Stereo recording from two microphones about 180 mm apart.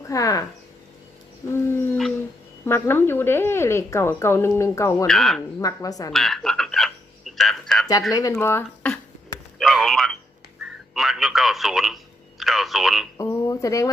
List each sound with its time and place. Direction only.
0.1 s a woman's voice: 20° left (ahead or behind)
1.5 s a sound: 15° left (ahead or behind)
2.6 s speech: 15° left (ahead or behind)
5.0 s speech: centre (ahead or behind)
5.5 s a woman's voice: 20° left (ahead or behind)
6.1 s frog: centre (ahead or behind)
8.1 s speech: 20° left (ahead or behind)
9.6 s a sound: centre (ahead or behind)
10.6 s telephone: centre (ahead or behind)
13.1 s speech: 15° left (ahead or behind)